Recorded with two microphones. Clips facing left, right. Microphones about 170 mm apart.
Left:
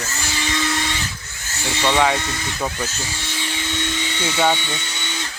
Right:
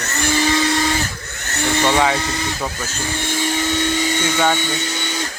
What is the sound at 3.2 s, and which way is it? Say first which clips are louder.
Vacuum cleaner: right 10 dB; 45° right (ahead or behind).